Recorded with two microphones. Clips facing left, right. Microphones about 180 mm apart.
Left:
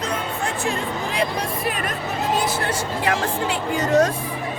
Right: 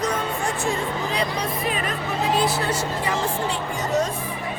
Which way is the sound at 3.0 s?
75° left (ahead or behind).